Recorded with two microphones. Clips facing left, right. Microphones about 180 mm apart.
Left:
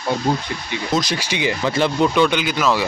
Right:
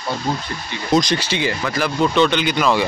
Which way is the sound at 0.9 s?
5° left (ahead or behind).